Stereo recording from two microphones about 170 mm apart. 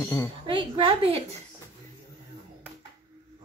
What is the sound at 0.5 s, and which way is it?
Speech, 30° right (ahead or behind).